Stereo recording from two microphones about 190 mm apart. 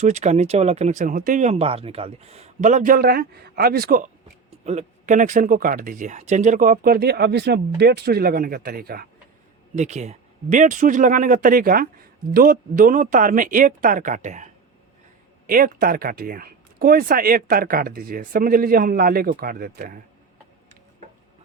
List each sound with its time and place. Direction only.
0.0 s speech: 40° right (ahead or behind)
4.6 s speech: 35° right (ahead or behind); by 9.0 s 50° right (ahead or behind)
9.7 s speech: 35° right (ahead or behind)